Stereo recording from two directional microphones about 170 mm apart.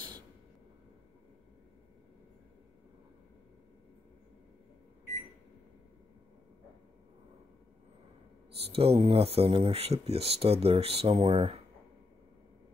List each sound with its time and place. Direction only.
8.7 s speech: 35° right (ahead or behind)